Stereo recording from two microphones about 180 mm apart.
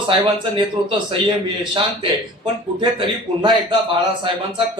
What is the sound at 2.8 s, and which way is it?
Speech, 25° right (ahead or behind).